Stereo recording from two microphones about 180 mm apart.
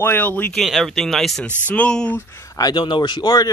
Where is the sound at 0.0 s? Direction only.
10° left (ahead or behind).